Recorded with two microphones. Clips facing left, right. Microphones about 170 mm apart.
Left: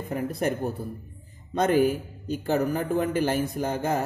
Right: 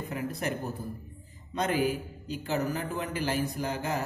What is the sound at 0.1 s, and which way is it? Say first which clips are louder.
Speech: left 7 dB; 50° left (ahead or behind).